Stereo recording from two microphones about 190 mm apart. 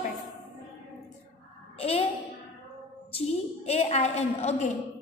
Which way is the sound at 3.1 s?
35° left (ahead or behind).